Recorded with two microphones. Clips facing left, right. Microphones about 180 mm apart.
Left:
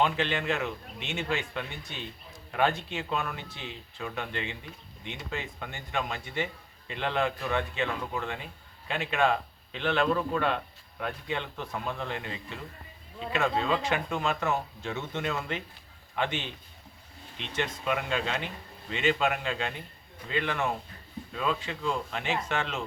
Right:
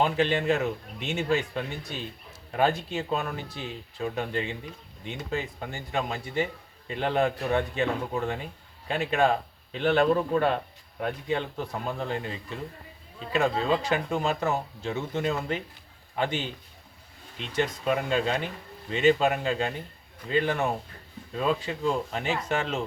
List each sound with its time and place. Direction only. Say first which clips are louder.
0.0 s a man's voice: right 3 dB; 40° right (ahead or behind)